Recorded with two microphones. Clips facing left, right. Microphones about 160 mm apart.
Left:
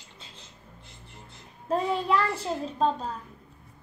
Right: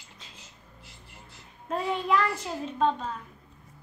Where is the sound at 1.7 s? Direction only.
30° left (ahead or behind).